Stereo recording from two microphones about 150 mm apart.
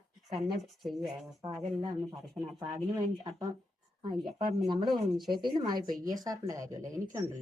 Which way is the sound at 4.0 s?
30° right (ahead or behind).